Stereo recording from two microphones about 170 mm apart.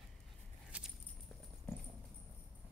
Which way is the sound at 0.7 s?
5° right (ahead or behind).